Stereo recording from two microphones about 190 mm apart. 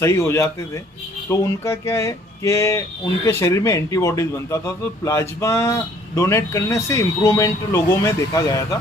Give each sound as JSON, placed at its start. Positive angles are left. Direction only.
{"t": 0.0, "sound": "speech", "side_deg": 15}